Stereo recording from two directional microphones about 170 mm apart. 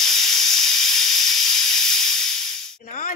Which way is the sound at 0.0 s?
Centre (ahead or behind).